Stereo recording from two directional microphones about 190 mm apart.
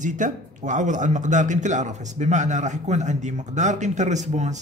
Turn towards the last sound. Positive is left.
turn(degrees=-40)  # may be behind; listen again after turning